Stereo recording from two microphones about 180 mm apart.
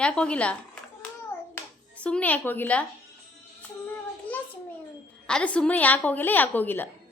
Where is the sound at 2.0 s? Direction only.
5° left (ahead or behind).